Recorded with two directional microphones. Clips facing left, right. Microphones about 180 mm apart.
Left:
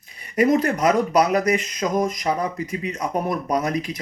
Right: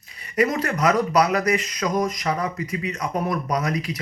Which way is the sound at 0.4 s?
25° left (ahead or behind).